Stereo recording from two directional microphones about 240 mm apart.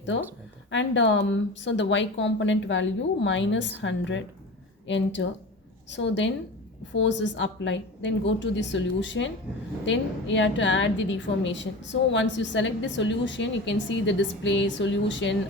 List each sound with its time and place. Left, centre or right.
0.1 s a woman's voice: left